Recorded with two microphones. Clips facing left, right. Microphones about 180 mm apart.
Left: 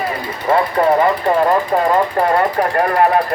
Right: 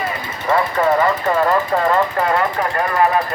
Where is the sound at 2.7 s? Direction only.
50° left (ahead or behind).